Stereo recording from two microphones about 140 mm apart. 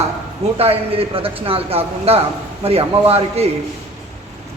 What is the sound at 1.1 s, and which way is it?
A man's voice, 40° right (ahead or behind).